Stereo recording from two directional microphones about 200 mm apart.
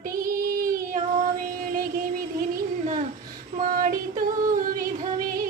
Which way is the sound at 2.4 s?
40° right (ahead or behind).